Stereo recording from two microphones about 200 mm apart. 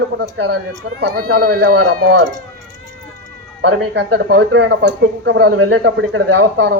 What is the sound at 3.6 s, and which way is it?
Speech, 60° right (ahead or behind).